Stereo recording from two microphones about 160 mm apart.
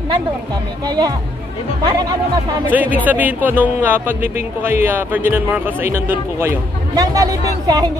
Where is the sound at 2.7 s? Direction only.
10° right (ahead or behind).